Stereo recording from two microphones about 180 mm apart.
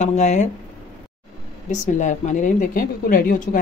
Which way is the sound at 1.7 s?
40° left (ahead or behind).